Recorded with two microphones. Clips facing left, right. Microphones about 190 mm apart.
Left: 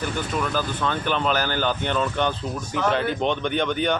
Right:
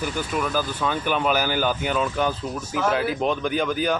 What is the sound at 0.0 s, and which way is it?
Speech, 5° right (ahead or behind).